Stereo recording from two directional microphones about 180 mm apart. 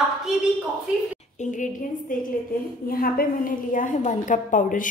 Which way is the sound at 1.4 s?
45° left (ahead or behind).